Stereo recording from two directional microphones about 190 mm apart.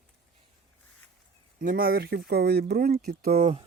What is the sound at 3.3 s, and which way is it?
Speech, 30° right (ahead or behind).